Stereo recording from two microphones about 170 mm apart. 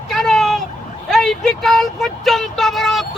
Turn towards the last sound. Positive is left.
turn(degrees=0)  # may be behind; listen again after turning